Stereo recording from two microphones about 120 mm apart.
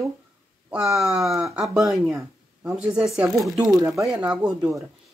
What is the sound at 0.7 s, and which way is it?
Speech, 5° right (ahead or behind).